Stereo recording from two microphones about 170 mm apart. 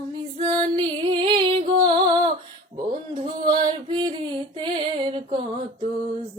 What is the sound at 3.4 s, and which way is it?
Female singing, 25° right (ahead or behind).